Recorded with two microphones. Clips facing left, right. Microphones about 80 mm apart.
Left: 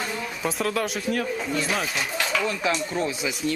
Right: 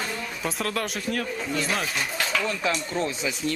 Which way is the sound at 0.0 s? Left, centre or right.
Centre.